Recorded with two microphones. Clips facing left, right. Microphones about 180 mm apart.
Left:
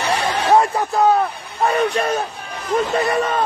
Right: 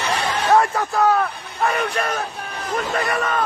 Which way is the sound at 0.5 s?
20° left (ahead or behind).